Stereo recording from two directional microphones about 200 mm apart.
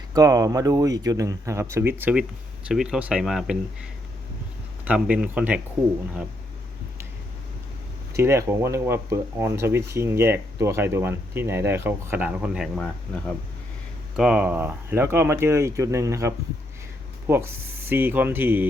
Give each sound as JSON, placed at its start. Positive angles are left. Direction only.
{"t": 0.1, "sound": "speech", "side_deg": -15}
{"t": 4.9, "sound": "speech", "side_deg": -5}
{"t": 8.1, "sound": "speech", "side_deg": -15}
{"t": 14.2, "sound": "speech", "side_deg": -5}